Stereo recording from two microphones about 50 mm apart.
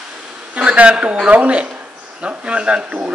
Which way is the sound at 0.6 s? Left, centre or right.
Right.